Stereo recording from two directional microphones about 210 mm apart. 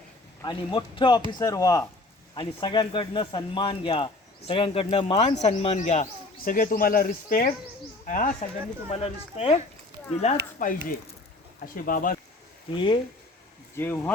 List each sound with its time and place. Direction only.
0.4 s speech: 20° left (ahead or behind); by 12.1 s 40° left (ahead or behind)
12.7 s speech: 25° left (ahead or behind)
13.7 s speech: 10° left (ahead or behind)